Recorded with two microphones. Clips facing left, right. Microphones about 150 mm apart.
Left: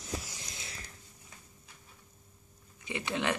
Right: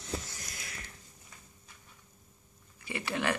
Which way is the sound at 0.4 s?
25° left (ahead or behind).